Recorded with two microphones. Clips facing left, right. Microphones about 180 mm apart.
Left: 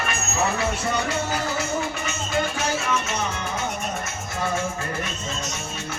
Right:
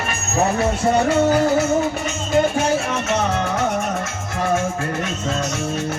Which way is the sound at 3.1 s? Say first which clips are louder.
Right 8 dB; 70° right (ahead or behind).